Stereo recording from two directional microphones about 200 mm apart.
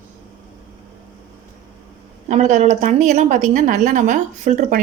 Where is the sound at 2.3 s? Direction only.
35° right (ahead or behind).